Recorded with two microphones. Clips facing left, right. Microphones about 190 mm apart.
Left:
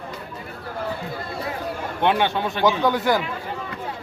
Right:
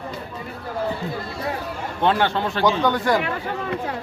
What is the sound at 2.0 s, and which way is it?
Speech, 15° left (ahead or behind).